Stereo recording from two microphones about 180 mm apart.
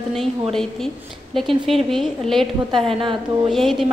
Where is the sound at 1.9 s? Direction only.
Centre (ahead or behind).